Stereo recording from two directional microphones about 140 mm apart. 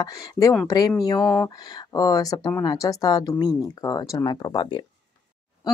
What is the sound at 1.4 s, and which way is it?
Speech, 25° left (ahead or behind).